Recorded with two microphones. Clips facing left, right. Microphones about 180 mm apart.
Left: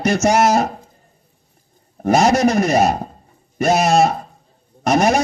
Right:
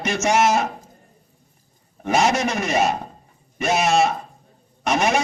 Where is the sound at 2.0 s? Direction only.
40° left (ahead or behind).